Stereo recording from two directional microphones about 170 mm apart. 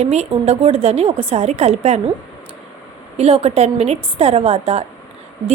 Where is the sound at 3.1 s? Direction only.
35° right (ahead or behind).